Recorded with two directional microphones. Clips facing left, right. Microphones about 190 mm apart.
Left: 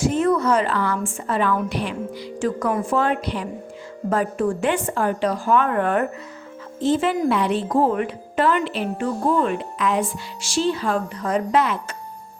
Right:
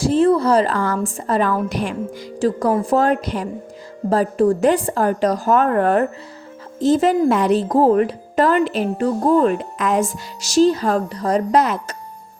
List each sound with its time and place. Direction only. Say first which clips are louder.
0.0 s speech: right 4 dB; 30° right (ahead or behind)